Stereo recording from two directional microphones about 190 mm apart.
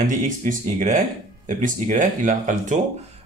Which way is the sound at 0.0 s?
45° right (ahead or behind).